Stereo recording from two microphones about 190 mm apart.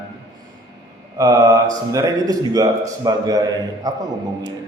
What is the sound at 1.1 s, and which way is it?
Mantra, 20° right (ahead or behind).